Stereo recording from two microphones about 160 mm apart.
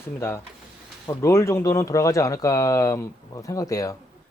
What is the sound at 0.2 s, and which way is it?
Speech, 15° left (ahead or behind).